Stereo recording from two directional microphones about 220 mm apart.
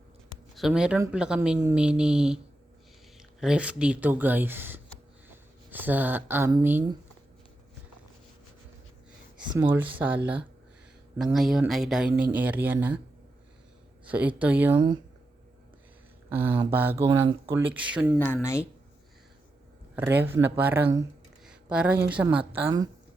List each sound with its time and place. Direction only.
0.5 s speech: centre (ahead or behind)
9.5 s speech: 10° right (ahead or behind)
11.3 s speech: centre (ahead or behind)
14.0 s speech: 5° right (ahead or behind)
14.8 s speech: 20° right (ahead or behind)
16.3 s speech: 10° right (ahead or behind)
17.7 s speech: 5° right (ahead or behind)
18.3 s speech: 10° left (ahead or behind)
20.0 s speech: 10° right (ahead or behind)
21.4 s a sound: 5° right (ahead or behind)
22.0 s speech: 5° right (ahead or behind)